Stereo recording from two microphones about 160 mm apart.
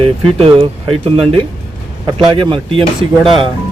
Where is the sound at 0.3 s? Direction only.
35° right (ahead or behind).